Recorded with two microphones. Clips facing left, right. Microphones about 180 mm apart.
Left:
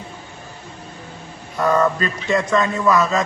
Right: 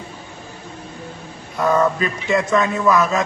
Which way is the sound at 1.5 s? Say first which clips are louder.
Even; 5° right (ahead or behind).